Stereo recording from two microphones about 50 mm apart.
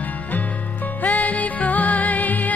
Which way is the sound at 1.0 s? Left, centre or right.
Left.